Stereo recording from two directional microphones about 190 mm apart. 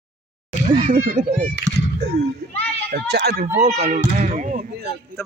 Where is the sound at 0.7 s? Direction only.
25° right (ahead or behind).